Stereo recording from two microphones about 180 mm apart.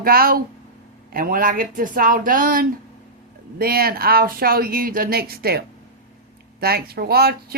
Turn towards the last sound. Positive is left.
turn(degrees=-60)  # may be behind; listen again after turning